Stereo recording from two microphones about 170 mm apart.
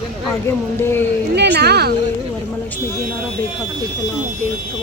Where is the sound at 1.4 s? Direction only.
80° right.